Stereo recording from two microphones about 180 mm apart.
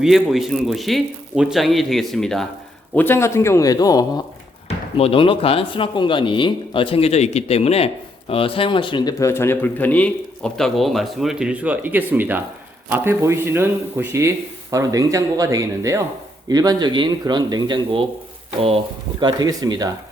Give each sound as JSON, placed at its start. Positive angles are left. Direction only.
{"t": 0.0, "sound": "a man's voice", "side_deg": 0}
{"t": 4.9, "sound": "speech", "side_deg": 30}
{"t": 19.2, "sound": "speech", "side_deg": -20}